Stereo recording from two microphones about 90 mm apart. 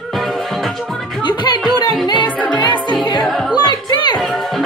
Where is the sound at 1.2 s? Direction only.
55° left (ahead or behind).